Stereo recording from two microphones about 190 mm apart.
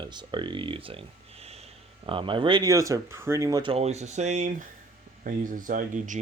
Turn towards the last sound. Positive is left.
turn(degrees=-40)  # may be behind; listen again after turning